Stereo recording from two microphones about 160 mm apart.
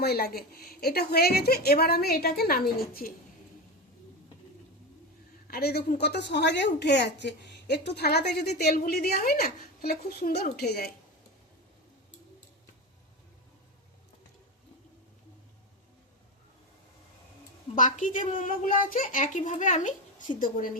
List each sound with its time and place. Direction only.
0.0 s a woman's voice: 75° left (ahead or behind)
5.5 s a woman's voice: 80° left
8.6 s a woman's voice: 60° left (ahead or behind); by 10.9 s 75° left (ahead or behind)
17.7 s a woman's voice: 50° left (ahead or behind)